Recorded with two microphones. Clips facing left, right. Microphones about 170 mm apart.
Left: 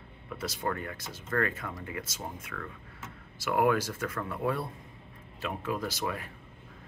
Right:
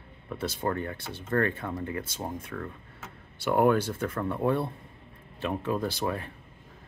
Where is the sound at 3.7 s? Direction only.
30° right (ahead or behind).